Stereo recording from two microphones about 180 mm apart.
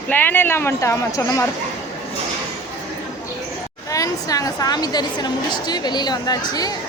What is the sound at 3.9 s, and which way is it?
A woman's voice, 20° left (ahead or behind).